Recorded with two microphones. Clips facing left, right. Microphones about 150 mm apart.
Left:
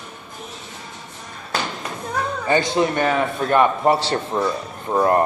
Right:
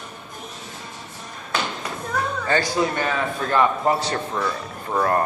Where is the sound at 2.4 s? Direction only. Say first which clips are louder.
Left 4 dB; 20° left (ahead or behind).